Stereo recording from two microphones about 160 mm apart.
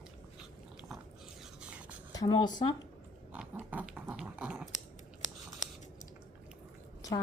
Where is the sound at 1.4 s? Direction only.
5° right (ahead or behind).